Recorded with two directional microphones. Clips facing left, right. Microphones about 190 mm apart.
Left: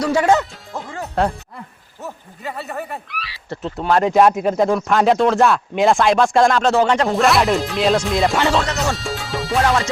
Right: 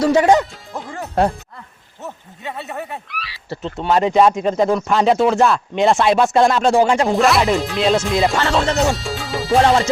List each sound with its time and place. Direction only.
0.0 s music: 20° right (ahead or behind)
0.7 s music: centre (ahead or behind)
2.0 s speech: centre (ahead or behind)
9.6 s music: 30° right (ahead or behind)